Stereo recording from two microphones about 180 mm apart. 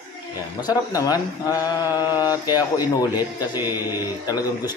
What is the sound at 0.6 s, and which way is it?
Speech, 20° left (ahead or behind).